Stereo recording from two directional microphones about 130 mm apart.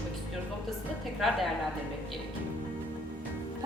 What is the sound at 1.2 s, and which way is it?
Speech, centre (ahead or behind).